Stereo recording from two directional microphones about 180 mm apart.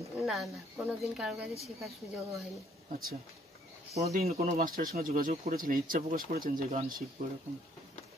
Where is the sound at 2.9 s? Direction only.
55° right (ahead or behind).